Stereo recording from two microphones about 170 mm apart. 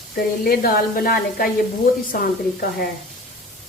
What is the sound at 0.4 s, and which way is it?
A woman's voice, 60° left (ahead or behind).